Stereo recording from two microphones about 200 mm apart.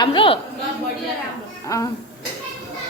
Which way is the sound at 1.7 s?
15° left (ahead or behind).